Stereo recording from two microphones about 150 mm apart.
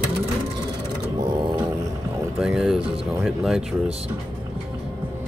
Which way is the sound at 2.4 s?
5° right (ahead or behind).